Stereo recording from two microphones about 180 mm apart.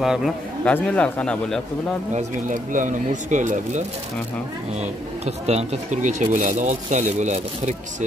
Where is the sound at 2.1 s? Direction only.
45° right (ahead or behind).